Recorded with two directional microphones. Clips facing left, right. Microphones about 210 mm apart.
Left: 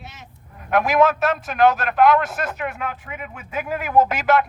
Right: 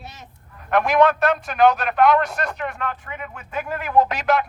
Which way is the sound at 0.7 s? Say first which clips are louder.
Even; centre (ahead or behind).